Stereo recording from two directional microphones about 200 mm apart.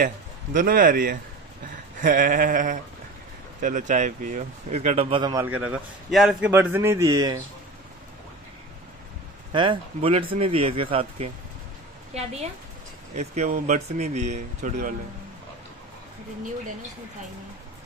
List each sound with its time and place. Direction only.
0.0 s a man's voice: 40° right (ahead or behind)
2.0 s a sound: 40° right (ahead or behind)
3.6 s speech: 40° right (ahead or behind); by 5.5 s 20° right (ahead or behind)
5.5 s a man's voice: 5° right (ahead or behind)
9.5 s speech: 25° right (ahead or behind)